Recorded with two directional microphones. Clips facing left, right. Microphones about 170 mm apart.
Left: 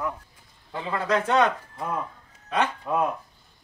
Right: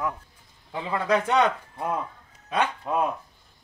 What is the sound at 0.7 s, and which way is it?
Speech, 10° right (ahead or behind).